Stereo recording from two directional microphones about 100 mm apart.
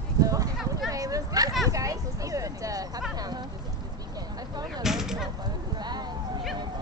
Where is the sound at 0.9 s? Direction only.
35° right (ahead or behind).